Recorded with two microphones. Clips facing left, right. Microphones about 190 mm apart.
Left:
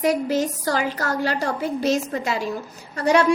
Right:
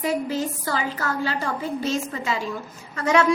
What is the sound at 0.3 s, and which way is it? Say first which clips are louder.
Speech: left 4 dB; 80° left.